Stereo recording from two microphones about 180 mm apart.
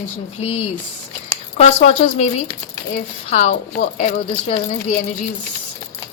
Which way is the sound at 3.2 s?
40° left (ahead or behind).